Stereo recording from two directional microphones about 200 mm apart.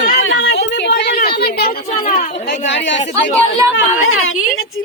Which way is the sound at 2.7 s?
65° left (ahead or behind).